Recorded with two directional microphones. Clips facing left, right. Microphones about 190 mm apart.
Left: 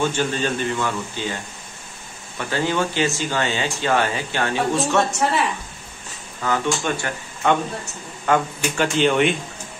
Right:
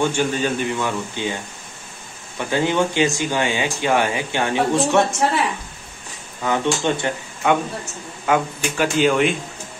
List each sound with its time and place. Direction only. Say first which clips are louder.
0.0 s speech: right 2 dB; 15° right (ahead or behind)
6.4 s speech: right 2 dB; 20° right (ahead or behind)
7.4 s speech: right 1 dB; 10° right (ahead or behind)